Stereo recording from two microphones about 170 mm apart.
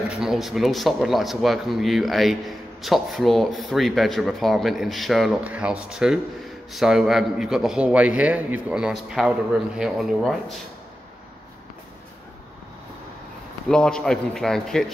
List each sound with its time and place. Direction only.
0.2 s speech: centre (ahead or behind)
13.7 s speech: 5° left (ahead or behind)